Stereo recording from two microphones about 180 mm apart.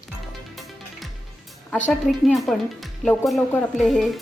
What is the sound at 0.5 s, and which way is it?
Music, centre (ahead or behind).